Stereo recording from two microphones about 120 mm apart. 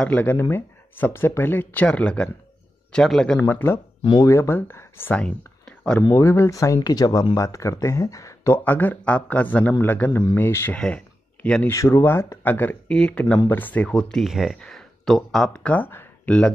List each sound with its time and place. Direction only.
0.0 s a man's voice: 10° left (ahead or behind)
3.3 s speech: 15° left (ahead or behind)
5.2 s a sound: 10° left (ahead or behind)
6.0 s speech: 20° left (ahead or behind)
10.8 s a sound: 10° left (ahead or behind)
11.7 s speech: 25° left (ahead or behind)